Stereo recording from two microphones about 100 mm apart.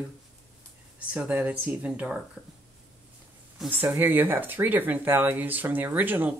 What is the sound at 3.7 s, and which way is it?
Speech, 20° right (ahead or behind).